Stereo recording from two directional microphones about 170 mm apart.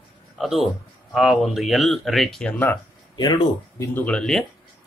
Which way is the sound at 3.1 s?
25° left (ahead or behind).